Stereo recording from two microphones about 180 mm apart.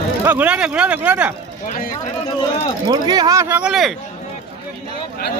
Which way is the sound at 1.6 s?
45° left (ahead or behind).